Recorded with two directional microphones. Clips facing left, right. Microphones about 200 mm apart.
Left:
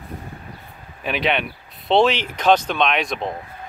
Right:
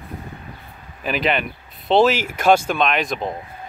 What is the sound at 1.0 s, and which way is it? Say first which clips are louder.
Speech: right 1 dB; centre (ahead or behind).